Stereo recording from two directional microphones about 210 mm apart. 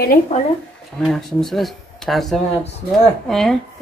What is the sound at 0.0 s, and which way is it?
Speech, 45° left (ahead or behind).